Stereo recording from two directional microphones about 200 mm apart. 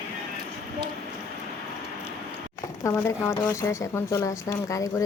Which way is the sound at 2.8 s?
15° left (ahead or behind).